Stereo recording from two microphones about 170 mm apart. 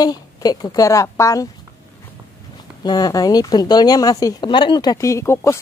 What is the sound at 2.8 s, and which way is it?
A woman's voice, 25° left (ahead or behind).